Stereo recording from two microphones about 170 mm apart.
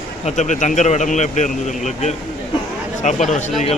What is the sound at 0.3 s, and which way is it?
Speech, 45° left (ahead or behind).